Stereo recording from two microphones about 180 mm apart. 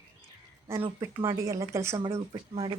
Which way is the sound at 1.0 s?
15° right (ahead or behind).